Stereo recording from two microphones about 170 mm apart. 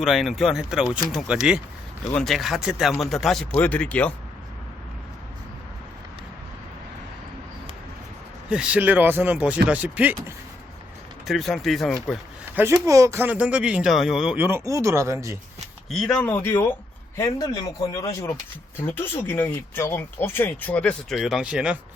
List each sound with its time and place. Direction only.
0.0 s speech: centre (ahead or behind)
8.4 s a man's voice: 5° right (ahead or behind)
12.5 s a man's voice: 10° right (ahead or behind)
15.9 s speech: centre (ahead or behind)